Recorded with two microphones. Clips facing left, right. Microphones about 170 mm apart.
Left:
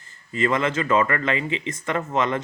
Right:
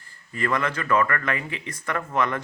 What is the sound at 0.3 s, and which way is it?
Speech, 20° left (ahead or behind).